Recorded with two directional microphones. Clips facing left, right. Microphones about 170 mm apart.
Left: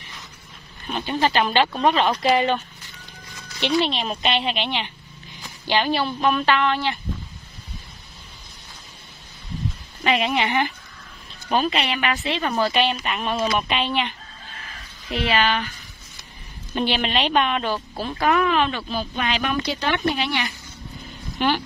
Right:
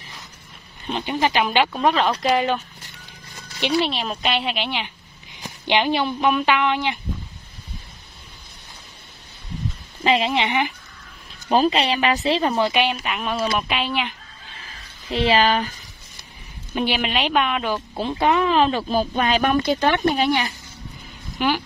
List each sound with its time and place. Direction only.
0.8 s a woman's voice: 20° right (ahead or behind)
2.0 s a woman's voice: 5° left (ahead or behind)
3.8 s a woman's voice: 5° right (ahead or behind)
5.7 s a woman's voice: 20° right (ahead or behind)
10.0 s speech: 30° right (ahead or behind)
11.5 s speech: 30° right (ahead or behind); by 12.9 s 15° right (ahead or behind)
13.0 s a woman's voice: 5° right (ahead or behind)
15.0 s speech: 30° right (ahead or behind)
16.7 s a woman's voice: 10° right (ahead or behind)
17.9 s speech: 25° right (ahead or behind); by 20.4 s 45° right (ahead or behind)
21.4 s a woman's voice: 5° right (ahead or behind)